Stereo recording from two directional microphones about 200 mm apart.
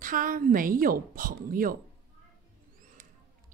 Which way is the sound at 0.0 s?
45° right (ahead or behind).